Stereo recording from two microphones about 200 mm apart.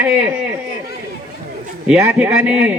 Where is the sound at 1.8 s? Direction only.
5° right (ahead or behind).